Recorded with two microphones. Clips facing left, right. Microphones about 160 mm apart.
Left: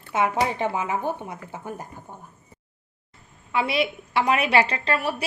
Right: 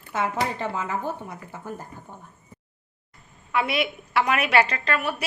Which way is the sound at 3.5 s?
30° left (ahead or behind).